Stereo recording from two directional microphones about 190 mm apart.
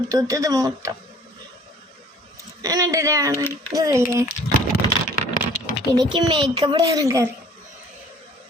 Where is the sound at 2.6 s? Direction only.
15° right (ahead or behind).